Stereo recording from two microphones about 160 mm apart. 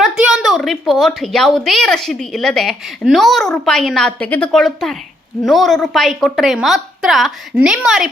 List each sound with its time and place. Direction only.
0.0 s a woman's voice: 5° right (ahead or behind)